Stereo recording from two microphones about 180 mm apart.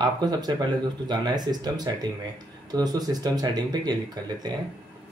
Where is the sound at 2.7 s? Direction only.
20° right (ahead or behind).